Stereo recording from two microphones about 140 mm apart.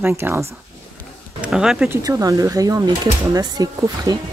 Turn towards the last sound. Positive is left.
turn(degrees=-25)  # may be behind; listen again after turning